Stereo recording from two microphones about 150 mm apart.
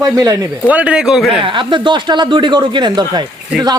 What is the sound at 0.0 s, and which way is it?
Speech, 25° right (ahead or behind).